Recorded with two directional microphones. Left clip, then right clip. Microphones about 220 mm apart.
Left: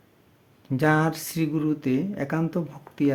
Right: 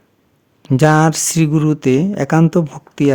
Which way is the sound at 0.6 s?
50° right (ahead or behind).